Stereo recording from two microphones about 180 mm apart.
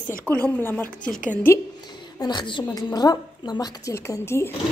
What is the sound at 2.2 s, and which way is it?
A woman's voice, 25° left (ahead or behind).